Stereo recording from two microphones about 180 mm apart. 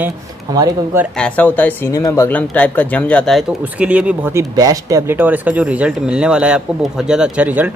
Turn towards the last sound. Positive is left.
turn(degrees=-10)  # may be behind; listen again after turning